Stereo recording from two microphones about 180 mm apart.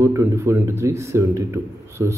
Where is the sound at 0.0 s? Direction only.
15° right (ahead or behind).